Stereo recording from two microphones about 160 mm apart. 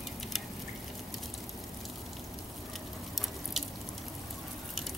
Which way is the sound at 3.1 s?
Centre (ahead or behind).